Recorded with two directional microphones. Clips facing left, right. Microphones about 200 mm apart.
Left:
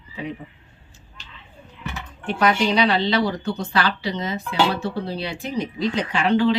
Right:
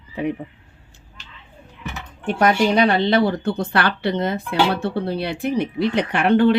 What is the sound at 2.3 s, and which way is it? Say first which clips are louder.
Speech: right 3 dB; 50° right (ahead or behind).